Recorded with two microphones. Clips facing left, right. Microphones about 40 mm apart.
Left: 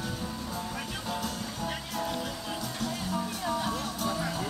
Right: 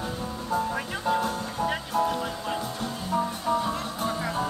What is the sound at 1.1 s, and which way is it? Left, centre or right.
Music, right.